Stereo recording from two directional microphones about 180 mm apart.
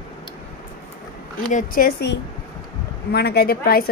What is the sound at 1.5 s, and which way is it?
A woman's voice, 50° left (ahead or behind).